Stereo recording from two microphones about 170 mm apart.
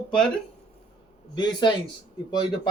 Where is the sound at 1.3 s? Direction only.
25° left (ahead or behind).